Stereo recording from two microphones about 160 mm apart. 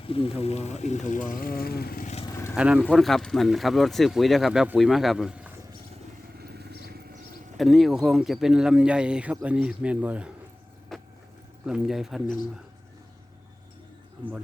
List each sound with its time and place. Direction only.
0.0 s speech: 35° left (ahead or behind); by 2.0 s 75° left (ahead or behind)
2.3 s a sound: 20° left (ahead or behind)
2.6 s speech: 5° right (ahead or behind)
6.5 s vehicle: 85° right
7.5 s speech: centre (ahead or behind)
10.9 s vehicle: centre (ahead or behind)
11.6 s speech: 5° right (ahead or behind)